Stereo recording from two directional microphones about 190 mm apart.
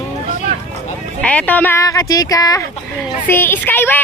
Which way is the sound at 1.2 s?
5° left (ahead or behind).